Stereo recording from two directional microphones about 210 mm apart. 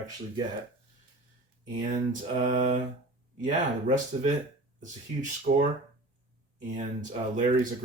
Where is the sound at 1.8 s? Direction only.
35° right (ahead or behind).